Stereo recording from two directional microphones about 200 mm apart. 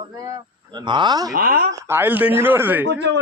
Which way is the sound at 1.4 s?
50° right (ahead or behind).